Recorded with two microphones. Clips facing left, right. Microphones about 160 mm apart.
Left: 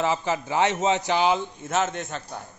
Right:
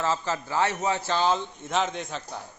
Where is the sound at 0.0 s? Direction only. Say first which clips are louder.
Left 3 dB; 15° left (ahead or behind).